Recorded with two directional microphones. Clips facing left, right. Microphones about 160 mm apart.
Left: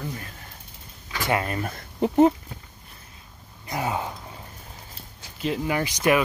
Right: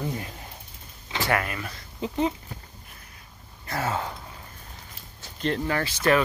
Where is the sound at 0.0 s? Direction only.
20° right (ahead or behind).